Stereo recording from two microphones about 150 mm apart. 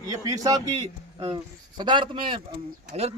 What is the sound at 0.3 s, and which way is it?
Speech, 25° right (ahead or behind).